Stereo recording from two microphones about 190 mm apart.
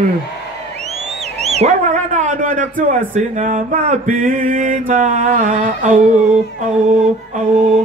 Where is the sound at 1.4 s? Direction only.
35° right (ahead or behind).